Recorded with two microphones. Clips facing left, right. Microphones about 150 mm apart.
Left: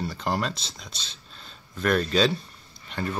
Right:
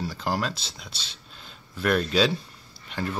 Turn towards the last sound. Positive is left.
turn(degrees=-5)  # may be behind; listen again after turning